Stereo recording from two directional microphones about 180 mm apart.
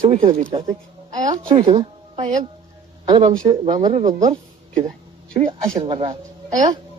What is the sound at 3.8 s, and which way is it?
Speech, 40° right (ahead or behind).